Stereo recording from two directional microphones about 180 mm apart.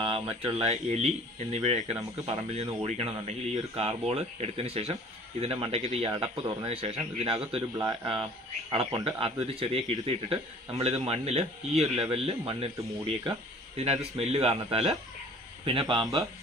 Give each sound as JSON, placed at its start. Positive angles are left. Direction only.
{"t": 0.0, "sound": "speech", "side_deg": -30}
{"t": 14.1, "sound": "speech", "side_deg": -35}